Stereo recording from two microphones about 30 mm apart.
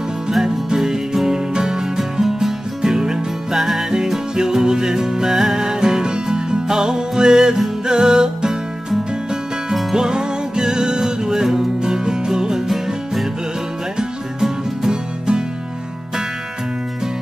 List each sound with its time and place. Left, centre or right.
0.7 s music: centre
2.8 s music: right
3.5 s music: centre
4.4 s music: right
9.9 s music: right
14.4 s music: centre